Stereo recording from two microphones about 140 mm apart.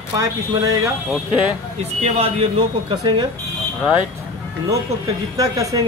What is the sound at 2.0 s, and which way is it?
Speech, 45° right (ahead or behind).